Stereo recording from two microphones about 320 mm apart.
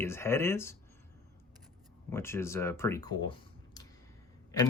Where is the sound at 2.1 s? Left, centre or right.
Centre.